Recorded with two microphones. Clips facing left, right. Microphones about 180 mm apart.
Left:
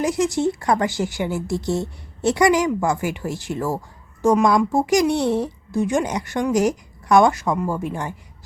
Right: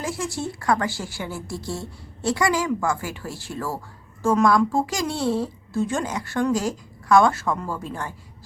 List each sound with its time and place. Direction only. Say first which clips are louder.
0.0 s a woman's voice: left 9 dB; 20° left (ahead or behind)